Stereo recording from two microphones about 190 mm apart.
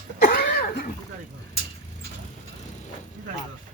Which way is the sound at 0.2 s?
50° left (ahead or behind).